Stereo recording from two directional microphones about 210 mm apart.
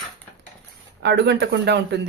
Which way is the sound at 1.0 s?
55° right (ahead or behind).